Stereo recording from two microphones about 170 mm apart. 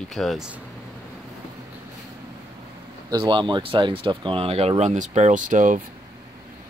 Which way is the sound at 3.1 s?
25° right (ahead or behind).